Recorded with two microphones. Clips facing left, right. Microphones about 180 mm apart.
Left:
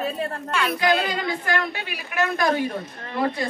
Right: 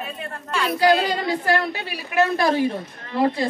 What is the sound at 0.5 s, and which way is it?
A woman's voice, 30° right (ahead or behind).